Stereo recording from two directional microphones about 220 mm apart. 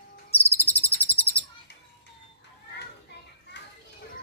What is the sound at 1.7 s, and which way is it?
Children playing, 50° left (ahead or behind).